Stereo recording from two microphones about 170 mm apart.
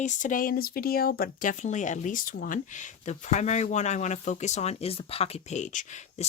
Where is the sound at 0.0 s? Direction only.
45° left (ahead or behind).